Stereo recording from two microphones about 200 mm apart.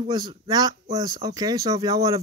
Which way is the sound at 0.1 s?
20° right (ahead or behind).